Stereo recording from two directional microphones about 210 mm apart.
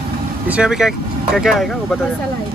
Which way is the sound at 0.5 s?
5° right (ahead or behind).